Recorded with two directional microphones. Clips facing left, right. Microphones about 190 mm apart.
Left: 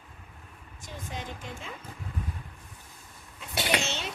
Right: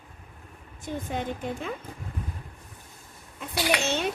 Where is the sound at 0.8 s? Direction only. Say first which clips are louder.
Right 9 dB; 55° right (ahead or behind).